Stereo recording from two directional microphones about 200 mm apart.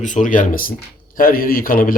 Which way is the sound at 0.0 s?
40° left (ahead or behind).